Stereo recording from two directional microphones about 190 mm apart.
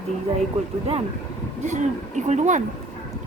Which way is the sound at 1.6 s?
40° right (ahead or behind).